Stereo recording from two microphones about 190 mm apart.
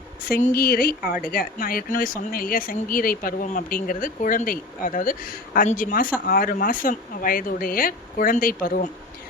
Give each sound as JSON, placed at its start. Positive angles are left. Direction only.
{"t": 0.3, "sound": "speech", "side_deg": 45}